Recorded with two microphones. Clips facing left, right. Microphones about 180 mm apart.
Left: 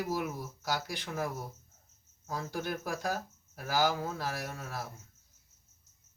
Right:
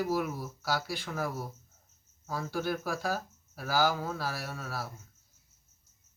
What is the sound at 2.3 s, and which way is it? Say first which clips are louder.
Speech: right 3 dB; 20° left (ahead or behind).